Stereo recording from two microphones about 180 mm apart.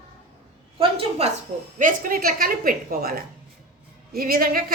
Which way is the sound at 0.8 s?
35° right (ahead or behind).